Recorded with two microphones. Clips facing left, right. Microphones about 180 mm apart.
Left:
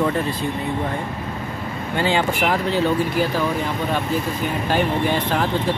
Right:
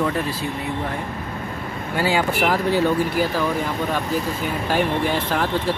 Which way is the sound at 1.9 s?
10° right (ahead or behind).